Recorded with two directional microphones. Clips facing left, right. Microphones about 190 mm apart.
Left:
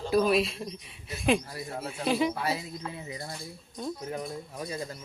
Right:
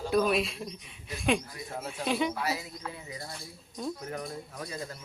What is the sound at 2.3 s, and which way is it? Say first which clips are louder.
Speech: left 2 dB; 30° left (ahead or behind).